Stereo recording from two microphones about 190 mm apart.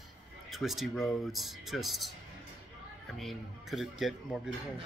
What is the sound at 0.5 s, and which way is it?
A man's voice, centre (ahead or behind).